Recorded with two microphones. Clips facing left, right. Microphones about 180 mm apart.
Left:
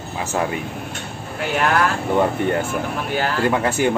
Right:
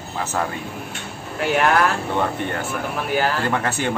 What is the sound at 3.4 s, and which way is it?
Speech, 10° left (ahead or behind).